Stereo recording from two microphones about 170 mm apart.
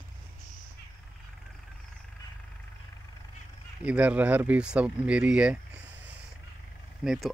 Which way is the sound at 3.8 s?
10° right (ahead or behind).